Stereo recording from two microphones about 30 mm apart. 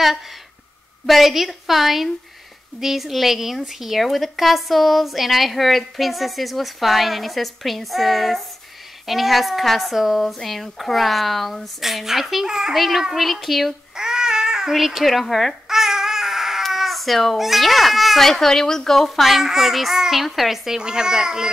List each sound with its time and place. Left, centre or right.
1.0 s a woman's voice: centre
12.4 s a child's voice: centre
12.7 s a woman's voice: centre
13.9 s babbling: right
14.8 s speech: centre
15.0 s a woman's voice: centre
15.7 s babbling: centre
16.7 s cat: centre
17.4 s a woman's voice: centre
18.2 s a woman's voice: centre
19.2 s a woman's voice: centre
20.7 s a child's voice: right